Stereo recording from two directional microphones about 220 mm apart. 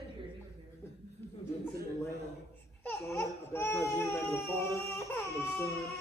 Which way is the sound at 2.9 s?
10° left (ahead or behind).